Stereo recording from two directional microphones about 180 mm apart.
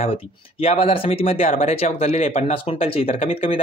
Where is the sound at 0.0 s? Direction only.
35° left (ahead or behind).